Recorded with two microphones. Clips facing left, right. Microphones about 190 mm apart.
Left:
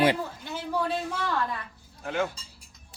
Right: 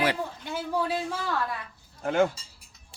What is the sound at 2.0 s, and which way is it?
Speech, 50° right (ahead or behind).